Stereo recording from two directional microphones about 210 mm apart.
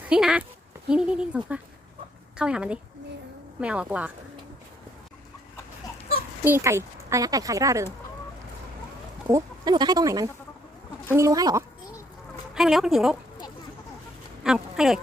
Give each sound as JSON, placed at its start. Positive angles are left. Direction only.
{"t": 0.1, "sound": "speech", "side_deg": -5}
{"t": 6.4, "sound": "speech", "side_deg": -10}
{"t": 9.2, "sound": "speech", "side_deg": -15}
{"t": 12.5, "sound": "speech", "side_deg": 0}
{"t": 14.4, "sound": "speech", "side_deg": -5}